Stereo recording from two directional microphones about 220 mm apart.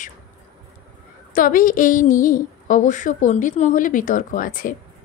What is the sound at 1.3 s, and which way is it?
A woman's voice, 40° left (ahead or behind).